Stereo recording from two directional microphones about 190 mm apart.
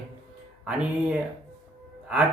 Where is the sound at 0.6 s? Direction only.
5° right (ahead or behind).